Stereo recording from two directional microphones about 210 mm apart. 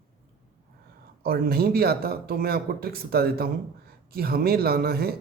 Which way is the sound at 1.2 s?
45° right (ahead or behind).